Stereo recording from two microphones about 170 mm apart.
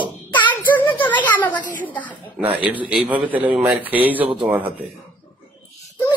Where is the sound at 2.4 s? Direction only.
10° right (ahead or behind).